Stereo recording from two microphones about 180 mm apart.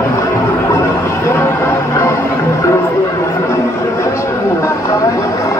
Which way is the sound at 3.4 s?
15° left (ahead or behind).